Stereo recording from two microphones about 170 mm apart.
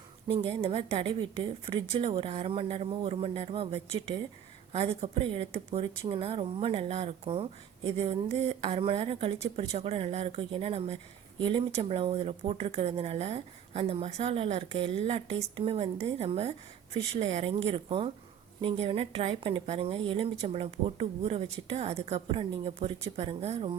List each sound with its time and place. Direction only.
0.3 s speech: 30° right (ahead or behind)